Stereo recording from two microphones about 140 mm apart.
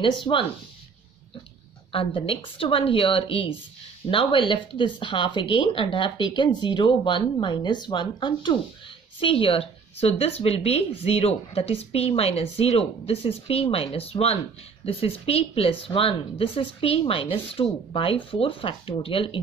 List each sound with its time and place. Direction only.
0.2 s speech: 35° left (ahead or behind)
1.9 s a woman's voice: 40° left (ahead or behind)